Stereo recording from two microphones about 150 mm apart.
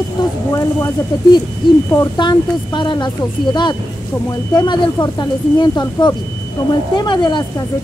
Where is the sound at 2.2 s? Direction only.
30° left (ahead or behind).